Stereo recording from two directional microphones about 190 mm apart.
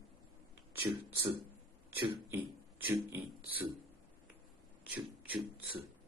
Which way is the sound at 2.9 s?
10° right (ahead or behind).